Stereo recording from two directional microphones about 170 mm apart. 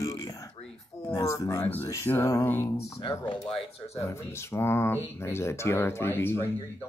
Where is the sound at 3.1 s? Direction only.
30° left (ahead or behind).